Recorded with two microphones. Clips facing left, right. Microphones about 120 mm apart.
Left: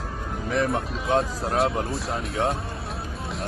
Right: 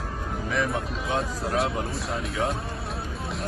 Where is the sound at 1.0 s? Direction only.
Centre (ahead or behind).